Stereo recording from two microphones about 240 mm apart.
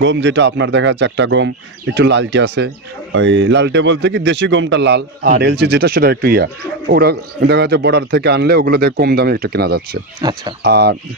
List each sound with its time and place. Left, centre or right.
0.0 s speech: right
10.2 s speech: centre
10.6 s speech: right